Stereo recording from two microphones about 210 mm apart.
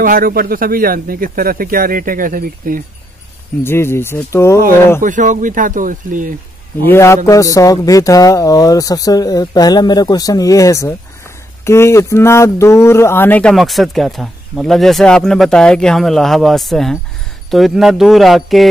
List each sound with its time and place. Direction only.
0.0 s speech: 45° right (ahead or behind)
3.6 s speech: 10° left (ahead or behind)
5.0 s speech: 35° right (ahead or behind)
6.9 s speech: 10° left (ahead or behind)